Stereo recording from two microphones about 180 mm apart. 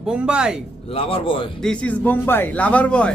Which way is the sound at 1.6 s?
5° left (ahead or behind).